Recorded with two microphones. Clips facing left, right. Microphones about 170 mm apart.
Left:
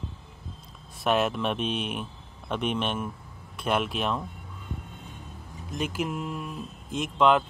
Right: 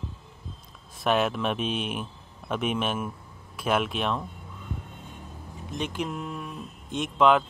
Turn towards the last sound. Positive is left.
turn(degrees=0)  # may be behind; listen again after turning